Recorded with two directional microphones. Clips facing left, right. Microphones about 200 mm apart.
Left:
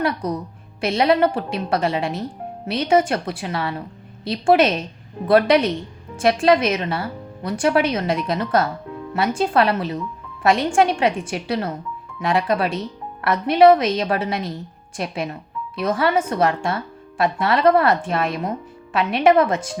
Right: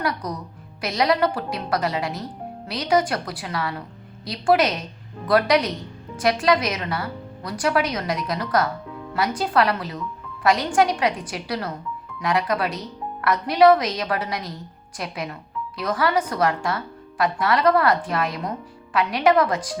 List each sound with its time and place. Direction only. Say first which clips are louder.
0.0 s speech: left 4 dB; 30° left (ahead or behind)